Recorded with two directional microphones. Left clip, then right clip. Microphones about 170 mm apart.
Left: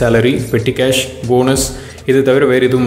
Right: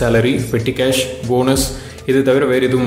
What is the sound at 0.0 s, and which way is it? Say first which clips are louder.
A man's voice: left 3 dB; 15° left (ahead or behind).